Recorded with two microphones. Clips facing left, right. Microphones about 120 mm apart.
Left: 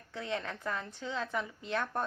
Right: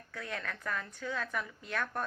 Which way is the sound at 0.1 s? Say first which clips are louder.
Left 4 dB; 25° left (ahead or behind).